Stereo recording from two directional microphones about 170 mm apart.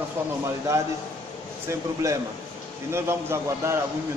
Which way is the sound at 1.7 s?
15° right (ahead or behind).